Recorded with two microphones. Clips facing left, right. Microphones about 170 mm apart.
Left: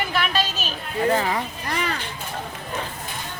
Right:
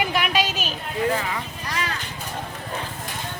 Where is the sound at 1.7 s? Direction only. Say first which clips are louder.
Left 2 dB; 55° left (ahead or behind).